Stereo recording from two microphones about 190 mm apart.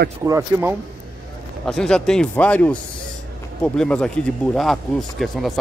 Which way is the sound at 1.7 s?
5° left (ahead or behind).